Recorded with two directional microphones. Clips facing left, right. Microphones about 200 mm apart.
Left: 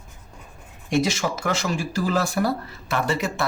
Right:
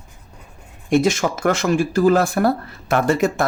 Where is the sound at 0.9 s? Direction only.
55° right (ahead or behind).